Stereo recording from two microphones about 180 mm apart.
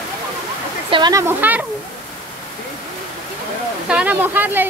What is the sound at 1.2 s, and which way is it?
Speech, 10° right (ahead or behind).